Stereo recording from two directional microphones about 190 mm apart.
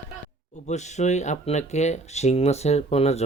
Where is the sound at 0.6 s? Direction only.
35° left (ahead or behind).